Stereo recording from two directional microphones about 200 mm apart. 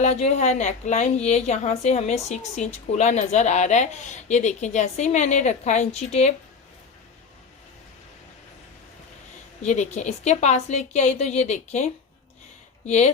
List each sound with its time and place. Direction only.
0.0 s a woman's voice: 35° left (ahead or behind)
9.6 s a woman's voice: 35° left (ahead or behind)